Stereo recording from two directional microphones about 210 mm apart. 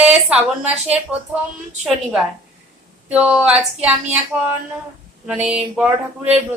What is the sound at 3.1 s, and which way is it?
A woman's voice, 5° right (ahead or behind).